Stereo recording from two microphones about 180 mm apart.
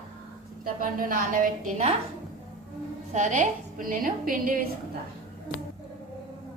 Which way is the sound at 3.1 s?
45° right (ahead or behind).